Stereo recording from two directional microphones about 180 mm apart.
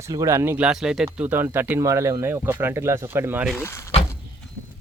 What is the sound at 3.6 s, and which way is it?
Speech, 15° left (ahead or behind).